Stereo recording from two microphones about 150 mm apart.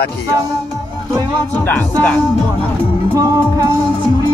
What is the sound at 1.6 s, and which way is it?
Speech, 10° left (ahead or behind).